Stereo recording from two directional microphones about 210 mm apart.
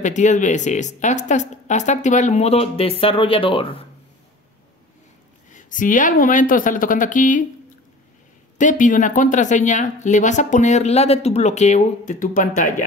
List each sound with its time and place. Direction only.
0.0 s speech: 35° left (ahead or behind)
5.5 s speech: 40° left (ahead or behind)
8.5 s speech: 40° left (ahead or behind)